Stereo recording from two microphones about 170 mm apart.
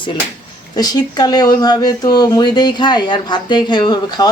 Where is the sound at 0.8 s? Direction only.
25° left (ahead or behind).